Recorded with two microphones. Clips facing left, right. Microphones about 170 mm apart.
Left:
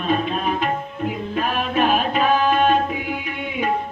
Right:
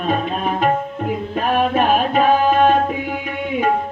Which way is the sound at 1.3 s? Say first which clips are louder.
Right 4 dB; 45° right (ahead or behind).